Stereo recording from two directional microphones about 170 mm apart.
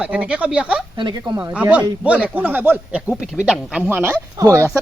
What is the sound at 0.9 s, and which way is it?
Speech, 25° right (ahead or behind).